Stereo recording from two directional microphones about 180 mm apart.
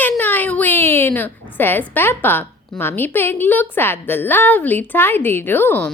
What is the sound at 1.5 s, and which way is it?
A woman's voice, 10° left (ahead or behind).